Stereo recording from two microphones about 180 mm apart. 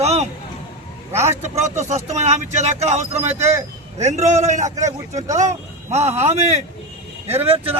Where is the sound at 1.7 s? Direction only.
40° right (ahead or behind).